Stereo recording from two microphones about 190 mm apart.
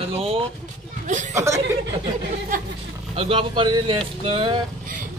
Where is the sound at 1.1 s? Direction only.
40° right (ahead or behind).